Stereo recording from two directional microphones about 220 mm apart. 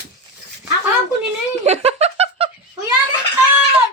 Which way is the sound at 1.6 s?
30° right (ahead or behind).